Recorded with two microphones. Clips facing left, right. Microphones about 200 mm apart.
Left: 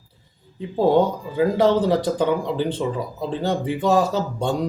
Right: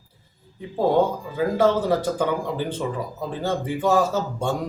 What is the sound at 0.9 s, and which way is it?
Speech, 15° left (ahead or behind).